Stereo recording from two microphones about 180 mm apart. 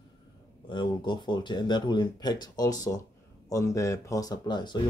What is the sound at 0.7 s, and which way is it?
Speech, 25° left (ahead or behind).